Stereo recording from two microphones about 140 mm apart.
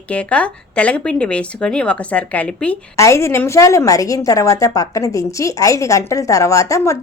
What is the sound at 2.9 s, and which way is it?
A woman's voice, 20° left (ahead or behind).